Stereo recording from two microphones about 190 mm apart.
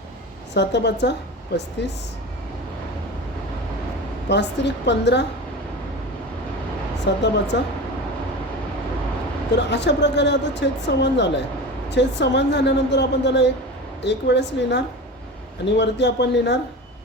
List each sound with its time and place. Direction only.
0.5 s speech: 65° left (ahead or behind)
4.3 s speech: 65° left (ahead or behind)
7.1 s speech: 65° left (ahead or behind)
9.6 s speech: 65° left (ahead or behind)